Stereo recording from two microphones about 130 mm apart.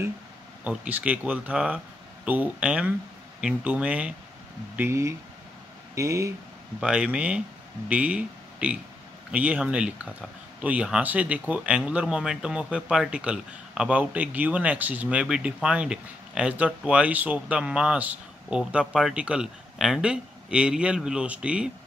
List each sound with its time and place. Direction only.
0.7 s speech: 10° right (ahead or behind)
4.7 s speech: 20° right (ahead or behind)
6.8 s speech: 5° right (ahead or behind)